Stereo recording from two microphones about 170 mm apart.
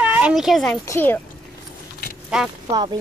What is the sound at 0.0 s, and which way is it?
Speech, 5° right (ahead or behind).